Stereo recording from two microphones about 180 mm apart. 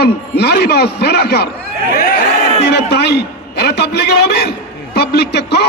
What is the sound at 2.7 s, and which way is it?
A man's voice, 70° left (ahead or behind).